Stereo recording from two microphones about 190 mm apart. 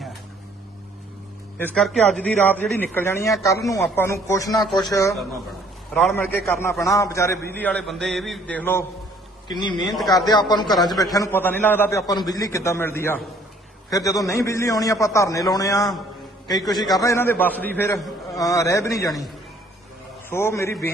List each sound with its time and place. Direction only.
1.5 s a man's voice: 5° left (ahead or behind)
5.9 s a man's voice: 5° left (ahead or behind)
6.5 s a man's voice: 15° left (ahead or behind)
9.5 s a man's voice: 25° left (ahead or behind)
9.8 s a man's voice: centre (ahead or behind)
10.8 s a man's voice: 20° left (ahead or behind)
20.3 s a man's voice: 15° left (ahead or behind)